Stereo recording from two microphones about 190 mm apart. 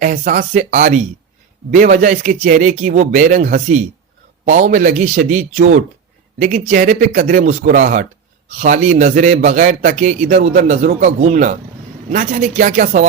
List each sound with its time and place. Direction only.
0.0 s a man's voice: 45° right (ahead or behind)